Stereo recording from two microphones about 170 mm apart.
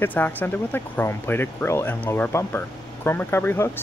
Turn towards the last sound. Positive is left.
turn(degrees=15)  # may be behind; listen again after turning